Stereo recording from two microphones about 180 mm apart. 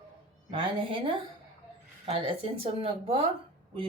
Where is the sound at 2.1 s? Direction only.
30° right (ahead or behind).